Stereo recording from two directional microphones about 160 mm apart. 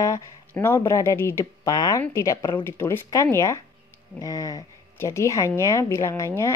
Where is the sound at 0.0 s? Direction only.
20° left (ahead or behind).